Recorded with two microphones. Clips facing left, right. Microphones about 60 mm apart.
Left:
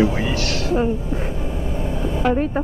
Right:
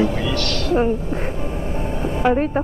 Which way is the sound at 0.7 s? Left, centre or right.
Right.